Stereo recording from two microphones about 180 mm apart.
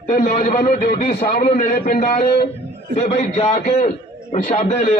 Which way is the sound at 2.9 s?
35° left (ahead or behind).